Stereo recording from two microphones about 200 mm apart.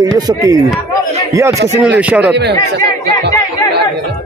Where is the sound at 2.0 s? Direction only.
5° right (ahead or behind).